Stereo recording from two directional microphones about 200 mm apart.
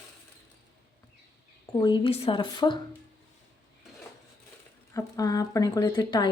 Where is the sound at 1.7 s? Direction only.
20° left (ahead or behind).